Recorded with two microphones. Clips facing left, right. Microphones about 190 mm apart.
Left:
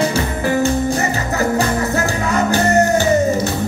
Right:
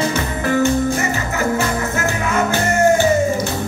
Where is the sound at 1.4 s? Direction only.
35° left (ahead or behind).